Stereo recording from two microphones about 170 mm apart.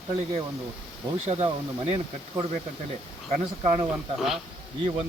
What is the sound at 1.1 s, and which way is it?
Speech, 35° right (ahead or behind).